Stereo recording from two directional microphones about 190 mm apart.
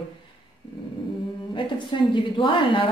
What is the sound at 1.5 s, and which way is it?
Speech, 25° left (ahead or behind).